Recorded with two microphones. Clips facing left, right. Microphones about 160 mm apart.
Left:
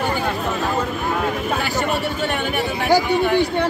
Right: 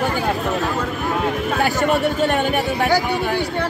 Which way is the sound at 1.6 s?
45° right (ahead or behind).